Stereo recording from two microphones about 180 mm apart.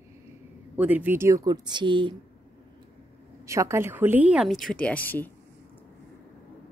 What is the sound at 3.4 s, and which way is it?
Speech, 15° right (ahead or behind).